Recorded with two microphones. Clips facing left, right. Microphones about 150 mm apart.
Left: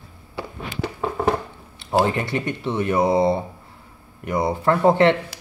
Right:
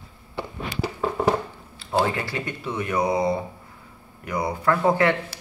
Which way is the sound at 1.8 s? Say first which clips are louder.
Left 3 dB; 20° left (ahead or behind).